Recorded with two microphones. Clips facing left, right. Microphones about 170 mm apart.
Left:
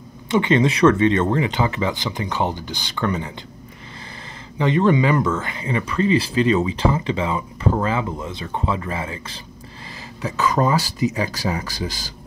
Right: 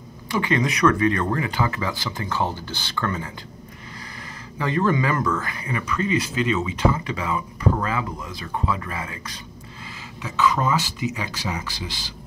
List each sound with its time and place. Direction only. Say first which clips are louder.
0.3 s speech: left 5 dB; 25° left (ahead or behind)
4.6 s speech: left 5 dB; 20° left (ahead or behind)
10.2 s speech: left 2 dB; 40° left (ahead or behind)